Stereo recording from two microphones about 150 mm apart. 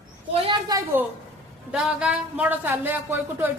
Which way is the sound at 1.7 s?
5° right (ahead or behind).